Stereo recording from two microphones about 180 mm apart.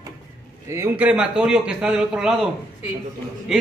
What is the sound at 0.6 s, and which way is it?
A man's voice, 15° right (ahead or behind).